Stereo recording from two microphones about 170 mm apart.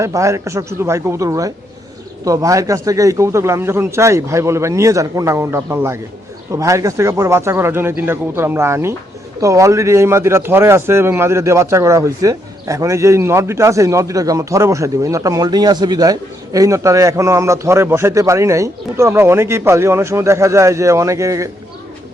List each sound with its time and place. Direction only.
0.0 s speech: 15° right (ahead or behind)